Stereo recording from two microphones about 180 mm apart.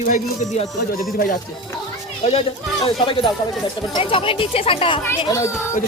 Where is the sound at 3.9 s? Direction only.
30° left (ahead or behind).